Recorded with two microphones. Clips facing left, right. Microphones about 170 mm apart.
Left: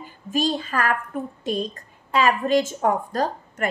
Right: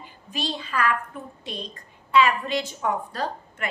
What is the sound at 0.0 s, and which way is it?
A woman's voice, 45° left (ahead or behind).